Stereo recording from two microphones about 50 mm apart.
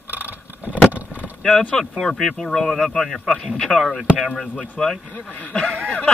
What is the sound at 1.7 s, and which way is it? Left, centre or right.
Speech, centre.